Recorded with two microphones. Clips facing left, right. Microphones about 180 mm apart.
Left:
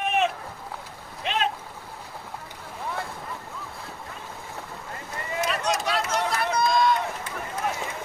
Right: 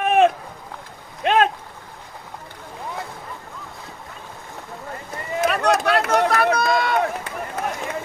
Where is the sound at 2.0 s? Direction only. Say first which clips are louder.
Right 2 dB; centre (ahead or behind).